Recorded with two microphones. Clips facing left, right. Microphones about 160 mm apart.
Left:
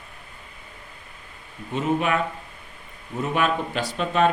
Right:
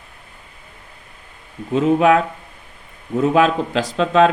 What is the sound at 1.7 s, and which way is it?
Speech, 90° right.